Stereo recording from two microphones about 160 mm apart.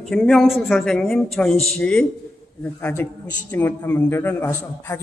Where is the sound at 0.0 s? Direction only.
Centre (ahead or behind).